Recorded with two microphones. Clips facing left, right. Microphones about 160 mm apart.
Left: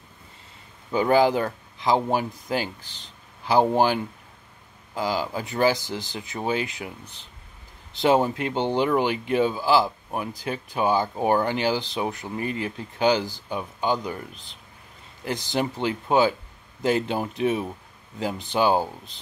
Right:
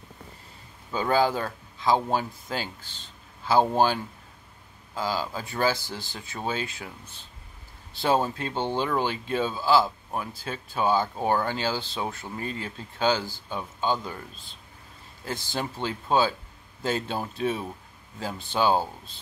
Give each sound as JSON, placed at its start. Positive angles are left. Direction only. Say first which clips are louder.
{"t": 0.9, "sound": "speech", "louder": "left 4 dB", "side_deg": 15}